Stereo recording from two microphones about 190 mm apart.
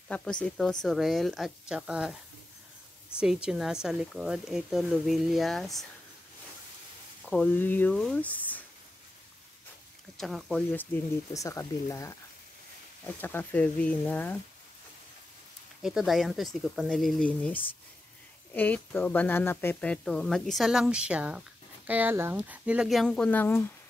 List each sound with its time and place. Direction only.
0.1 s speech: 5° left (ahead or behind)
3.2 s speech: 5° right (ahead or behind)
7.2 s speech: 5° left (ahead or behind)
10.1 s speech: centre (ahead or behind)
15.8 s speech: centre (ahead or behind)